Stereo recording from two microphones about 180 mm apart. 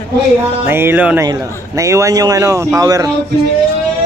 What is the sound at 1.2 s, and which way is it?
A man's voice, 20° right (ahead or behind).